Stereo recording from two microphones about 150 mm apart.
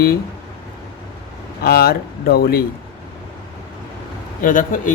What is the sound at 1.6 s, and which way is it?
Speech, 90° left.